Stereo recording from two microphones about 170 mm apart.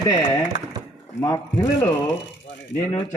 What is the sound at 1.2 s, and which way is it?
Speech, 20° left (ahead or behind).